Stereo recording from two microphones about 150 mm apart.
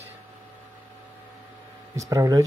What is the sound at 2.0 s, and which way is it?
Speech, 20° right (ahead or behind).